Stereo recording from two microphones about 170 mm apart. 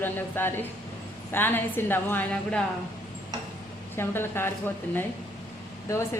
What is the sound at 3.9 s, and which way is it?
Speech, 15° left (ahead or behind).